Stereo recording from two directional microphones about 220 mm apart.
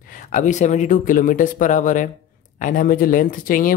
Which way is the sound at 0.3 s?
35° left (ahead or behind).